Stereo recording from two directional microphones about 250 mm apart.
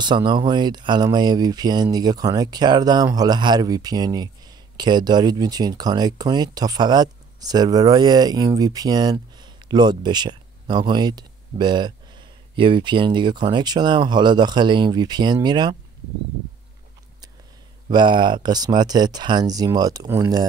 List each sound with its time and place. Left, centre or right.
0.0 s speech: centre
17.8 s speech: centre